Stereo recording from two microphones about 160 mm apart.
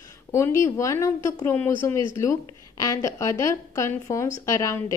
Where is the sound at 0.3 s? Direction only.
20° left (ahead or behind).